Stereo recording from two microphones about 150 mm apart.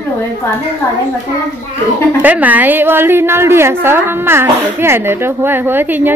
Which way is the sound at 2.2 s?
10° right (ahead or behind).